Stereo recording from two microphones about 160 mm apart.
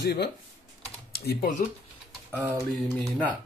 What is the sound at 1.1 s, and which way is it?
Speech, 75° left (ahead or behind).